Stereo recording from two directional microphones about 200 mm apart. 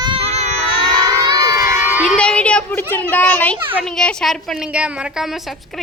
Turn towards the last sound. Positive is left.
turn(degrees=0)  # may be behind; listen again after turning